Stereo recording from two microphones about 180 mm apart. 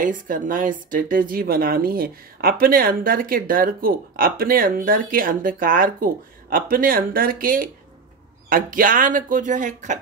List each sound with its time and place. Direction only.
0.0 s speech: 50° right (ahead or behind)